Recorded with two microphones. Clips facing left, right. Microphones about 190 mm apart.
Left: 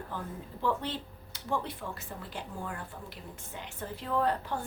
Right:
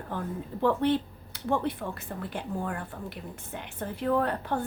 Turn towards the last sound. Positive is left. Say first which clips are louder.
# right 3 dB
turn(degrees=-55)  # may be behind; listen again after turning